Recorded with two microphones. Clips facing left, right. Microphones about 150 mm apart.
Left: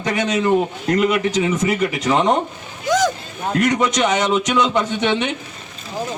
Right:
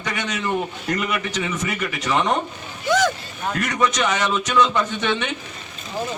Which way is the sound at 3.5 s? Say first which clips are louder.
Left 5 dB; 20° left (ahead or behind).